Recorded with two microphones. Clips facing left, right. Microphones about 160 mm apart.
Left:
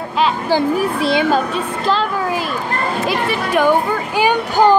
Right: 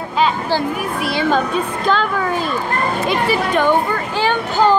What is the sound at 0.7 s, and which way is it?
Speech, 25° left (ahead or behind).